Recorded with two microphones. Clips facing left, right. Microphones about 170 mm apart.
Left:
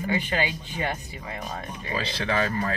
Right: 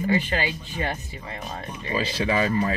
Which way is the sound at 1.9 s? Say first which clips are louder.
Right 3 dB; 10° right (ahead or behind).